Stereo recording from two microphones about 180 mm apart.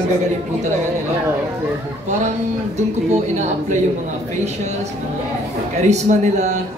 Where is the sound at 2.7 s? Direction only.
40° right (ahead or behind).